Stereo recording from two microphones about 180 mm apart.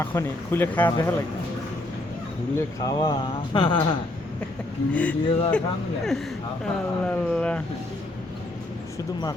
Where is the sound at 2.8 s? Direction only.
25° left (ahead or behind).